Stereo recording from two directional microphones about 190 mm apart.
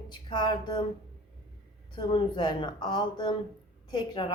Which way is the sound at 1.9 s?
25° left (ahead or behind).